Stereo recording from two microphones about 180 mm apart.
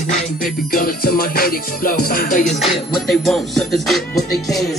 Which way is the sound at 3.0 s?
Centre (ahead or behind).